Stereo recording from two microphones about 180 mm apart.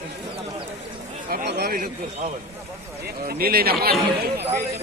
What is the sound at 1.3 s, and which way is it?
Speech, 60° right (ahead or behind).